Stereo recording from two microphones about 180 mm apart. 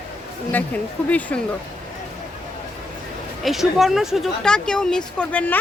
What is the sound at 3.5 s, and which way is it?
Speech, centre (ahead or behind).